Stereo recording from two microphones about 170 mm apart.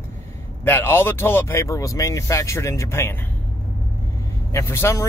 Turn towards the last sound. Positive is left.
turn(degrees=15)  # may be behind; listen again after turning